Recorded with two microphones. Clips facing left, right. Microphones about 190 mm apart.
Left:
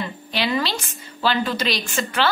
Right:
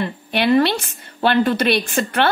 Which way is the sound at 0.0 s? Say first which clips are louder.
Right 6 dB; 55° right (ahead or behind).